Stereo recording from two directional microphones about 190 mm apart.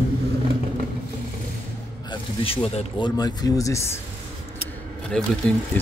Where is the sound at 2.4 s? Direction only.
30° left (ahead or behind).